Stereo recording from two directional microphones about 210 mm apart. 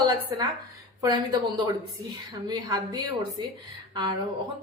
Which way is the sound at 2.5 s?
20° right (ahead or behind).